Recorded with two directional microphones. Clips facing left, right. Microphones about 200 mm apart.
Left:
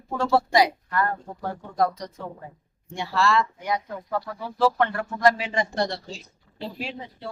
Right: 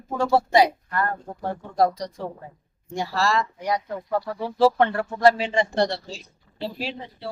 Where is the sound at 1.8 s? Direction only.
35° right (ahead or behind).